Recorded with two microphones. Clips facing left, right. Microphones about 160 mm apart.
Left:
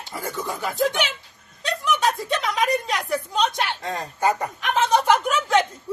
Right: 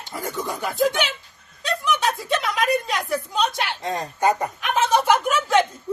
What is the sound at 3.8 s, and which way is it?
Speech, 20° right (ahead or behind).